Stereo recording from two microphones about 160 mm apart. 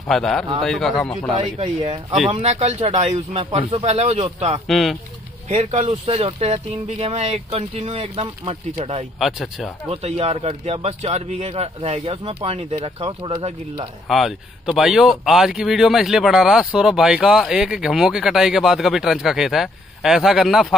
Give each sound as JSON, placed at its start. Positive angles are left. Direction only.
{"t": 0.1, "sound": "speech", "side_deg": 5}
{"t": 1.6, "sound": "speech", "side_deg": -30}
{"t": 2.3, "sound": "speech", "side_deg": -45}
{"t": 4.6, "sound": "speech", "side_deg": 0}
{"t": 5.5, "sound": "speech", "side_deg": -45}
{"t": 9.2, "sound": "speech", "side_deg": 0}
{"t": 9.8, "sound": "speech", "side_deg": -40}
{"t": 14.0, "sound": "speech", "side_deg": 0}